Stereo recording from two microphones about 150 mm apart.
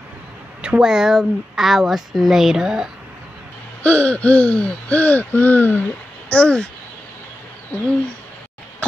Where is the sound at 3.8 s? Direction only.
10° left (ahead or behind).